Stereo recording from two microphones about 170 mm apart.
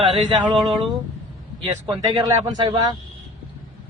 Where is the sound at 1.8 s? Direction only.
25° right (ahead or behind).